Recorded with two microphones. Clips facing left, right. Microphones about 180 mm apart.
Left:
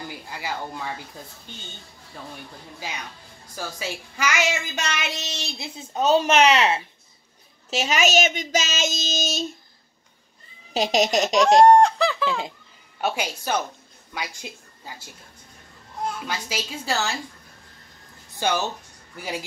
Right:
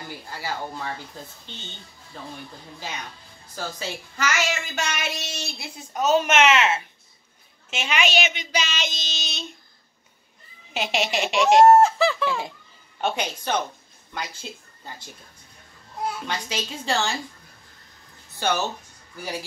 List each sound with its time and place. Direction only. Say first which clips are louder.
0.3 s a woman's voice: right 1 dB; 15° left (ahead or behind)
3.5 s speech: even; 10° left (ahead or behind); by 9.5 s 40° left (ahead or behind)
10.7 s speech: left 5 dB; 40° left (ahead or behind)
11.6 s a sound: right 2 dB; 5° right (ahead or behind)
13.0 s a woman's voice: even; 5° left (ahead or behind)
16.2 s a woman's voice: even; 5° left (ahead or behind)